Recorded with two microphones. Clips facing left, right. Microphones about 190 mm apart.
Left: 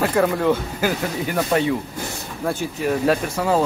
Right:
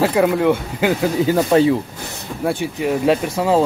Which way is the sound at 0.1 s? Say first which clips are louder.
Right 3 dB; 10° right (ahead or behind).